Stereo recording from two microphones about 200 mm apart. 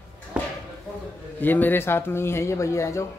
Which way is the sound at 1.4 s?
10° left (ahead or behind).